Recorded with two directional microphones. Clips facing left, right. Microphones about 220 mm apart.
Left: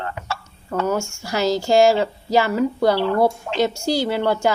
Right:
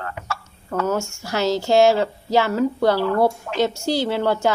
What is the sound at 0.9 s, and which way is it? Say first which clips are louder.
A woman's voice: left 1 dB; centre (ahead or behind).